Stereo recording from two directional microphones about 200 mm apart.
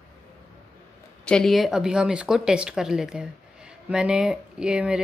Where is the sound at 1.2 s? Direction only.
5° left (ahead or behind).